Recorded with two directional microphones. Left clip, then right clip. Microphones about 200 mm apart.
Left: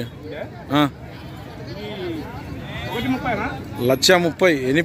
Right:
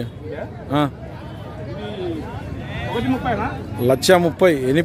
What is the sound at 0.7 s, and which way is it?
Speech, centre (ahead or behind).